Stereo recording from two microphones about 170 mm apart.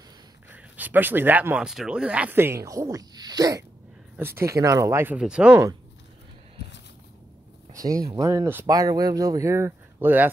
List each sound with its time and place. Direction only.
0.7 s speech: 10° right (ahead or behind)
7.7 s speech: 20° right (ahead or behind)